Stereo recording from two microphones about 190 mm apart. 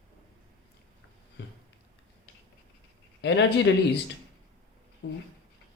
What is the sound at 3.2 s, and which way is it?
Speech, 65° left (ahead or behind).